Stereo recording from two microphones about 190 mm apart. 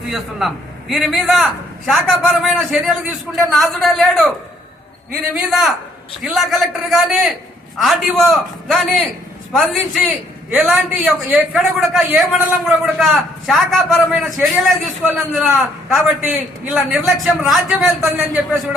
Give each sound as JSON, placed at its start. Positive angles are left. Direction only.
{"t": 0.1, "sound": "a man's voice", "side_deg": 0}
{"t": 5.3, "sound": "a man's voice", "side_deg": -5}